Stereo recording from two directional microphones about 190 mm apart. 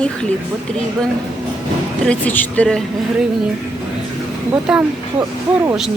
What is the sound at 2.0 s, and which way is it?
Speech, 5° left (ahead or behind).